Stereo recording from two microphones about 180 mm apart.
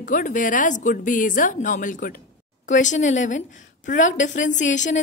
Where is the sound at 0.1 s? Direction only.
45° left (ahead or behind).